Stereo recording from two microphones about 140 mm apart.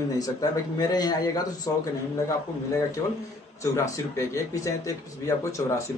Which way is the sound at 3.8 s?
20° left (ahead or behind).